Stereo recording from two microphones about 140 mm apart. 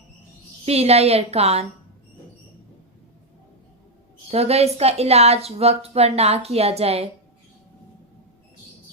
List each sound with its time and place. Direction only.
0.6 s speech: 45° right (ahead or behind)
4.3 s speech: 45° right (ahead or behind)